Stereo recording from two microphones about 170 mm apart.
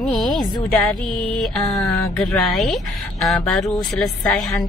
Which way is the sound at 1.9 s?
Centre (ahead or behind).